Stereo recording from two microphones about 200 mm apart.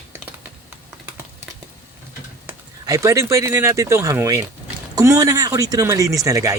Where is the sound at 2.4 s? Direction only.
15° right (ahead or behind).